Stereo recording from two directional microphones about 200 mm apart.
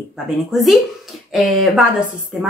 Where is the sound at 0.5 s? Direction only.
Centre (ahead or behind).